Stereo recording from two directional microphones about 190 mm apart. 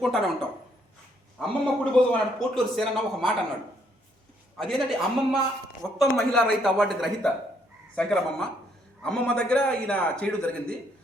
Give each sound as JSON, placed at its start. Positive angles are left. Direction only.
{"t": 0.0, "sound": "a man's voice", "side_deg": 0}
{"t": 1.4, "sound": "a man's voice", "side_deg": 0}
{"t": 4.5, "sound": "a man's voice", "side_deg": 0}